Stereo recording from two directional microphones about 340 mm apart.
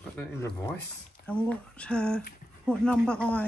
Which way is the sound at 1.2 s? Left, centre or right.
Centre.